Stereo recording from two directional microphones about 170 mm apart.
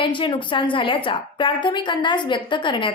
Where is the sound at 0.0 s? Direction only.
30° left (ahead or behind).